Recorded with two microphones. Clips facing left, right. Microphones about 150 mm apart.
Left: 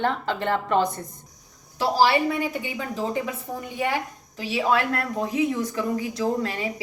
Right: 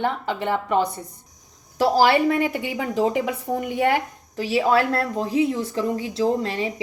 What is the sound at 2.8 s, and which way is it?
Speech, 85° right.